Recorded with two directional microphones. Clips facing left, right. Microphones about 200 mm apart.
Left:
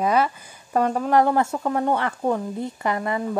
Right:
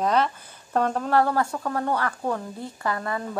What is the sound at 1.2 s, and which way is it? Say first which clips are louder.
A woman's voice: left 3 dB; 20° left (ahead or behind).